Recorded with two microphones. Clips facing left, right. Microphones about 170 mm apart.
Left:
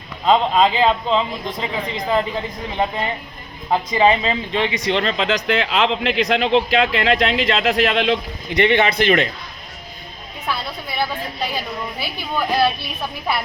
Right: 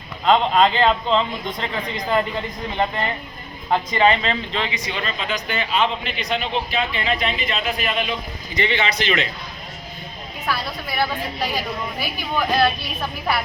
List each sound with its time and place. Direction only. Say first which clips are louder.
0.3 s speech: left 1 dB; 5° left (ahead or behind)
4.9 s speech: left 7 dB; 70° left (ahead or behind); by 9.3 s 50° left (ahead or behind)
10.4 s a woman's voice: even; centre (ahead or behind)
11.9 s a woman's voice: even; 5° left (ahead or behind)